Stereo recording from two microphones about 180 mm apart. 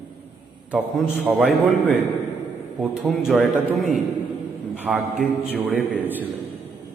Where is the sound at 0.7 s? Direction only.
5° right (ahead or behind).